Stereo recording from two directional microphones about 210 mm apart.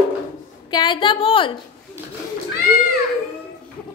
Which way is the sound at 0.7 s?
20° left (ahead or behind).